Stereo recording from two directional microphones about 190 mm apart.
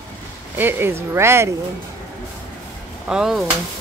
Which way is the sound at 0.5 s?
10° right (ahead or behind).